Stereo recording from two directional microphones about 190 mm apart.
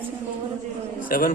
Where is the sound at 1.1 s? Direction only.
50° left (ahead or behind).